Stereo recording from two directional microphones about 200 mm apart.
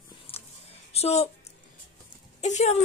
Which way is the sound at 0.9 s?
30° left (ahead or behind).